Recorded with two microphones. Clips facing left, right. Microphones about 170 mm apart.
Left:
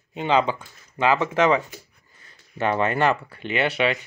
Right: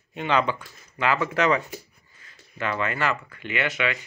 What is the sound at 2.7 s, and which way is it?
Speech, 35° left (ahead or behind).